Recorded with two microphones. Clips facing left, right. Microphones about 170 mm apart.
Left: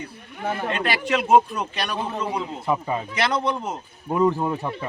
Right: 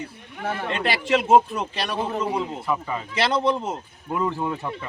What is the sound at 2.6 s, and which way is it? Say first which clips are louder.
Speech: left 2 dB; 25° left (ahead or behind).